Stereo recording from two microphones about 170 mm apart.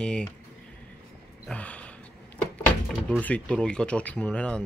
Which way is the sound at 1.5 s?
5° left (ahead or behind).